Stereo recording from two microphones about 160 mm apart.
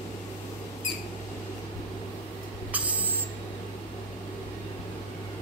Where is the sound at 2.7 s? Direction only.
10° right (ahead or behind).